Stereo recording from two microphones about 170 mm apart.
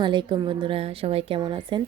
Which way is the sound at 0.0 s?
25° right (ahead or behind).